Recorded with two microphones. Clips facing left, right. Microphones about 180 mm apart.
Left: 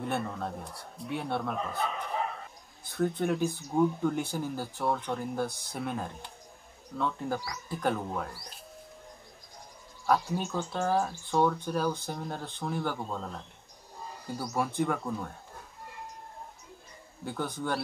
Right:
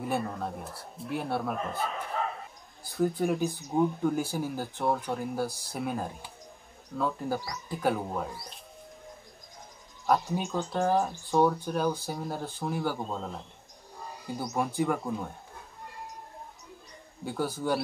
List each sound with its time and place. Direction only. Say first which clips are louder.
0.0 s speech: right 1 dB; 5° right (ahead or behind)
3.4 s speech: even; 15° right (ahead or behind)
10.1 s speech: right 1 dB; 15° right (ahead or behind)
14.5 s speech: right 1 dB; centre (ahead or behind)
15.0 s speech: right 1 dB; 15° right (ahead or behind)
17.2 s speech: right 3 dB; 5° right (ahead or behind)